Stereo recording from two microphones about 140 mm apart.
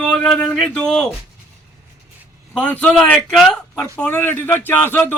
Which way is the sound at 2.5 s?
10° left (ahead or behind).